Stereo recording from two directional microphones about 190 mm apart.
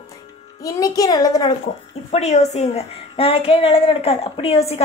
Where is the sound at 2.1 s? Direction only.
35° left (ahead or behind).